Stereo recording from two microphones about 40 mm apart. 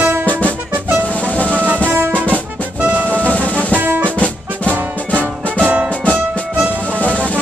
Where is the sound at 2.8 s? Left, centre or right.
Right.